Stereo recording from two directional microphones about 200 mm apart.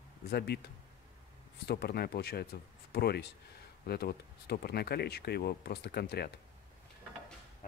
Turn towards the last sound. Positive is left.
turn(degrees=50)  # may be behind; listen again after turning